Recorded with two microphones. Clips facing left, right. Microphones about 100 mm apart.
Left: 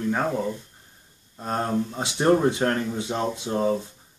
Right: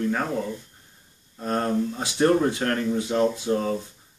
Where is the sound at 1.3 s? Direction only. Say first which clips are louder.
Right 1 dB; 20° left (ahead or behind).